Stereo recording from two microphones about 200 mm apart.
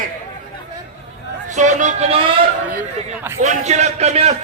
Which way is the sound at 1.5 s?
35° right (ahead or behind).